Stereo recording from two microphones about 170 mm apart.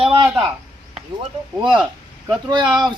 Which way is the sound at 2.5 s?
25° right (ahead or behind).